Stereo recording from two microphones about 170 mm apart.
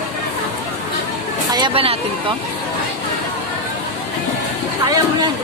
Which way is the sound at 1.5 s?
30° right (ahead or behind).